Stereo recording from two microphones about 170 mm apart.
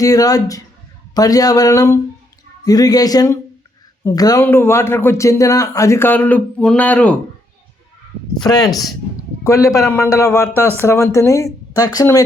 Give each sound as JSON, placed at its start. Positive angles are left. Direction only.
{"t": 0.0, "sound": "speech", "side_deg": 20}
{"t": 8.4, "sound": "speech", "side_deg": 25}